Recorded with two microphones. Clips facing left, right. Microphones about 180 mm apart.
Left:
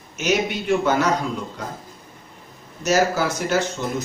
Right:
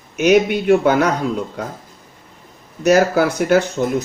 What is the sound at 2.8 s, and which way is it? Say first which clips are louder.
Speech: right 6 dB; 60° right (ahead or behind).